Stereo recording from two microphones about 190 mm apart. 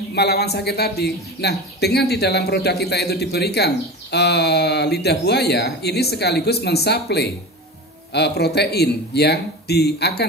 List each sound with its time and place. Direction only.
0.1 s speech: 60° left (ahead or behind)